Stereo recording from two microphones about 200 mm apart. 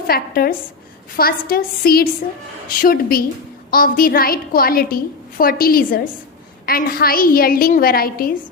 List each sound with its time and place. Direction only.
0.1 s a woman's voice: 50° left (ahead or behind)